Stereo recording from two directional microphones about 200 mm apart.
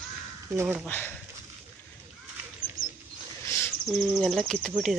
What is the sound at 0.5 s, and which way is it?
Speech, 10° right (ahead or behind).